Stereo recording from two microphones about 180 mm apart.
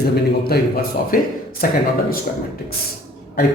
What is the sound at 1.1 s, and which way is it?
Speech, 50° left (ahead or behind).